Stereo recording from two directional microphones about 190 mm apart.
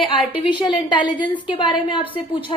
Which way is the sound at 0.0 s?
25° left (ahead or behind).